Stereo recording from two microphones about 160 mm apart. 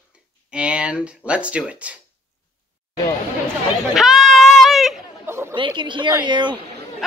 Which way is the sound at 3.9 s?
Centre (ahead or behind).